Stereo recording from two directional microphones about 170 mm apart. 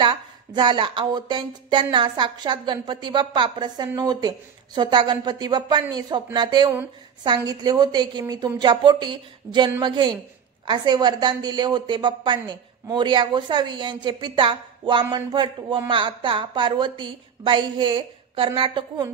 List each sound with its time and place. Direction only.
0.0 s speech: 25° right (ahead or behind)